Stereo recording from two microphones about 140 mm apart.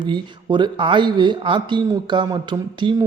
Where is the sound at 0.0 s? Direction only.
35° right (ahead or behind).